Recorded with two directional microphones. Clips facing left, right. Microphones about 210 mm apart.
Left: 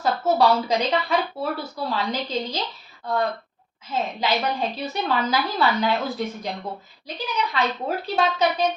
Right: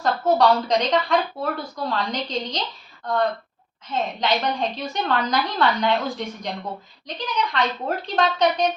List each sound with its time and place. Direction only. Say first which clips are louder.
0.0 s speech: right 1 dB; 5° left (ahead or behind)